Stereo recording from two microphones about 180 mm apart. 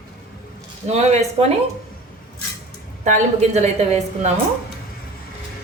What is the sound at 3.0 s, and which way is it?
A woman's voice, 40° right (ahead or behind).